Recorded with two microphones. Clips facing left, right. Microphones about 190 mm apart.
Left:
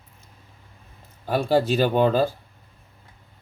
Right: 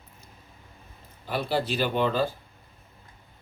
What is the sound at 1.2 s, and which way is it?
Speech, 45° left (ahead or behind).